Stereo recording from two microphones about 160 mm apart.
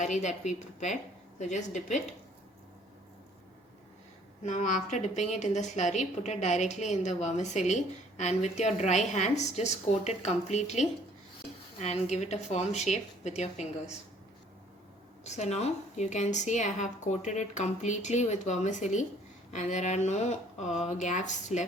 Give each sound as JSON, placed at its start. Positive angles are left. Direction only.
{"t": 0.0, "sound": "a woman's voice", "side_deg": 45}
{"t": 4.4, "sound": "a woman's voice", "side_deg": 50}
{"t": 12.1, "sound": "a woman's voice", "side_deg": 45}
{"t": 15.2, "sound": "a woman's voice", "side_deg": 45}